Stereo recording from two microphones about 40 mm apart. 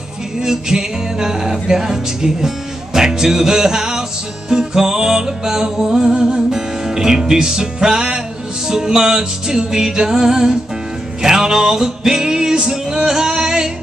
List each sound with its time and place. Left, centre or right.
0.4 s music: centre